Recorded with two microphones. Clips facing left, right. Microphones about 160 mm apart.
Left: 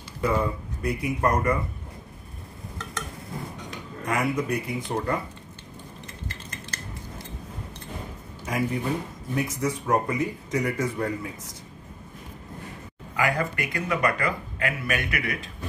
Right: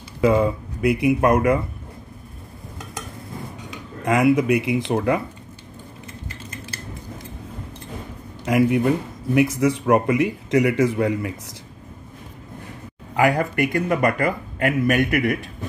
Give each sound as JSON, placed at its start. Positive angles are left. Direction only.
{"t": 0.2, "sound": "speech", "side_deg": -90}
{"t": 4.0, "sound": "speech", "side_deg": -90}
{"t": 8.5, "sound": "speech", "side_deg": -80}
{"t": 13.1, "sound": "speech", "side_deg": -60}